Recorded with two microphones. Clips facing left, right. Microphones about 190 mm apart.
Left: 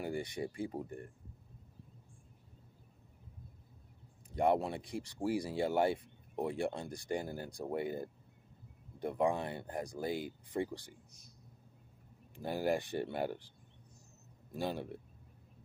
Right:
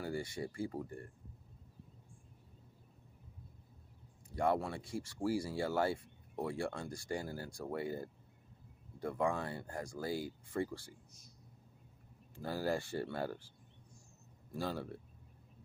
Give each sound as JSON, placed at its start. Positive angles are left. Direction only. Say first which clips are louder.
{"t": 0.0, "sound": "speech", "louder": "left 2 dB", "side_deg": 20}
{"t": 4.4, "sound": "speech", "louder": "left 3 dB", "side_deg": 20}
{"t": 12.4, "sound": "speech", "louder": "left 3 dB", "side_deg": 20}
{"t": 14.5, "sound": "speech", "louder": "left 2 dB", "side_deg": 20}